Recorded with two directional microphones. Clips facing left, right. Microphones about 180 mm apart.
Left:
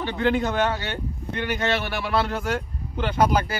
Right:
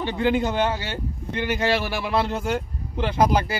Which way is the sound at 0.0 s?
10° right (ahead or behind).